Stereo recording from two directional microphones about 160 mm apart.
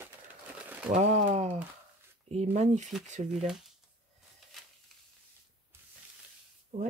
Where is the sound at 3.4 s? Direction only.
Centre (ahead or behind).